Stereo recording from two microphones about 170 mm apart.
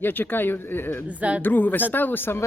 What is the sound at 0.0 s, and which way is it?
Speech, 10° left (ahead or behind).